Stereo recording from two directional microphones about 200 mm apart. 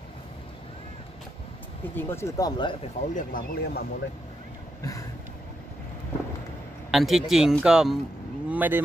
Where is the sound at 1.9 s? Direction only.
10° left (ahead or behind).